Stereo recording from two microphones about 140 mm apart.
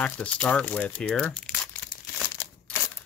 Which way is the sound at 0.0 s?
10° left (ahead or behind).